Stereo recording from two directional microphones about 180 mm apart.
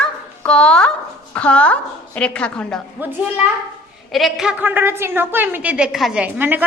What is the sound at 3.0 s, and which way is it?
A child's voice, 10° right (ahead or behind).